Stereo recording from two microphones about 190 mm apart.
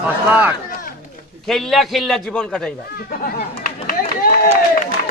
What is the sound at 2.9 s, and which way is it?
Speech, 50° left (ahead or behind).